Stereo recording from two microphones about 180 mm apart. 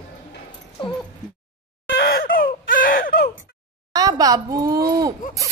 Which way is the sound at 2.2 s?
50° left (ahead or behind).